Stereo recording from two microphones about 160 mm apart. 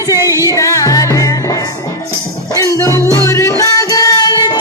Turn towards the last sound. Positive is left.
turn(degrees=25)  # may be behind; listen again after turning